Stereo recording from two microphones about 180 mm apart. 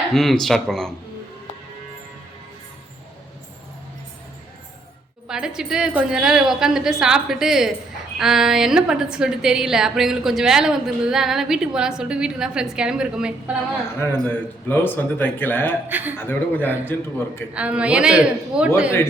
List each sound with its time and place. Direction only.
0.1 s a woman's voice: centre (ahead or behind)
5.3 s a woman's voice: 5° right (ahead or behind)
14.0 s speech: 10° left (ahead or behind)
15.9 s speech: 10° right (ahead or behind)
16.1 s speech: 10° left (ahead or behind)
17.5 s a woman's voice: 5° right (ahead or behind)